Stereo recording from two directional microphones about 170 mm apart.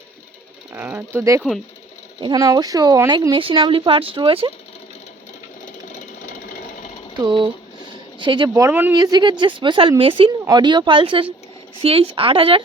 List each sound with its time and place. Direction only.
0.7 s speech: 10° right (ahead or behind)
1.4 s speech: centre (ahead or behind)
2.2 s speech: 20° right (ahead or behind)
5.9 s sewing machine: 50° left (ahead or behind)
7.2 s speech: 25° right (ahead or behind)